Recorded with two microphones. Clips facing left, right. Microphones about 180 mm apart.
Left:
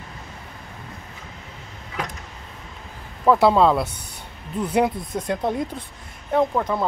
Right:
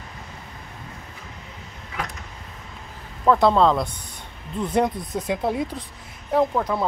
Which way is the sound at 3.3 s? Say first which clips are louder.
Left 1 dB; 5° left (ahead or behind).